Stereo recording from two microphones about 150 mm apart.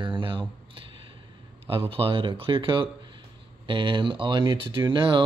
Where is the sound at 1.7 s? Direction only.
35° right (ahead or behind).